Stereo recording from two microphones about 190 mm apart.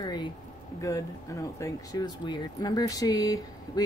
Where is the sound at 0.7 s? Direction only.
15° left (ahead or behind).